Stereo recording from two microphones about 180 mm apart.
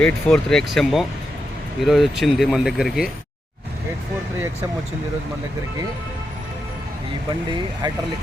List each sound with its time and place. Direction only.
0.0 s speech: 5° left (ahead or behind)